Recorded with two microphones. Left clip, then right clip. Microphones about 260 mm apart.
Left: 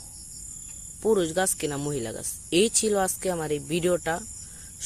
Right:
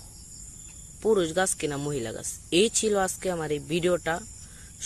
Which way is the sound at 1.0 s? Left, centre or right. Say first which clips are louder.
Even; centre.